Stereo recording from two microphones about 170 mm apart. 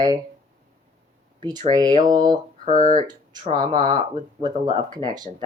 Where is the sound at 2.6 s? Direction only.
50° right (ahead or behind).